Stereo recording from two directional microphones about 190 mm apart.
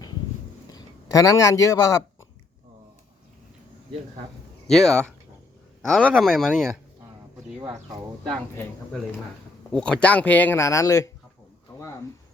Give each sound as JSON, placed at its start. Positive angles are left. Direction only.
{"t": 0.7, "sound": "speech", "side_deg": 15}
{"t": 4.7, "sound": "speech", "side_deg": 0}
{"t": 9.7, "sound": "speech", "side_deg": 5}